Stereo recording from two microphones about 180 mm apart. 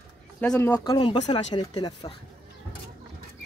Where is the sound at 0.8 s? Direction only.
30° left (ahead or behind).